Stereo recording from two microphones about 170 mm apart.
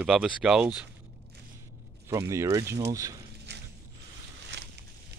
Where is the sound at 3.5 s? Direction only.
85° right.